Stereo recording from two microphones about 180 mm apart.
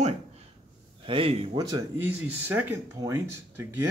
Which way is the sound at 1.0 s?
30° right (ahead or behind).